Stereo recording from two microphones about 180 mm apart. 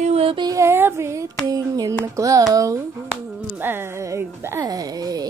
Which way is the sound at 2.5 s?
20° right (ahead or behind).